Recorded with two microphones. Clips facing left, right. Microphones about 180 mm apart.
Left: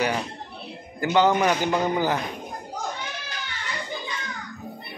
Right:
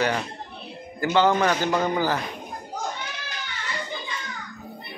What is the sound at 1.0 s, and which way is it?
A man's voice, 15° left (ahead or behind).